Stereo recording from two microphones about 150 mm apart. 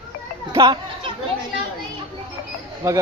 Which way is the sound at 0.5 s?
30° right (ahead or behind).